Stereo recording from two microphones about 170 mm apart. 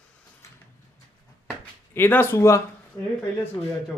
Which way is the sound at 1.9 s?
15° left (ahead or behind).